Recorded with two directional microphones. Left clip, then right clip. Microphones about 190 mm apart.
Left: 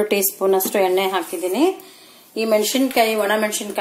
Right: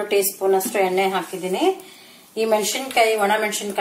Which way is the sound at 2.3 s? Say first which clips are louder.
Left 2 dB; 45° left (ahead or behind).